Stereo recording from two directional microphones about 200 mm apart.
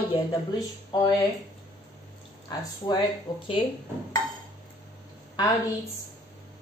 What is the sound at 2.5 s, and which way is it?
Speech, 20° left (ahead or behind).